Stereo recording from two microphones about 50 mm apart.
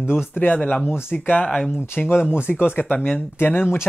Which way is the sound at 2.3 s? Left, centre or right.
Left.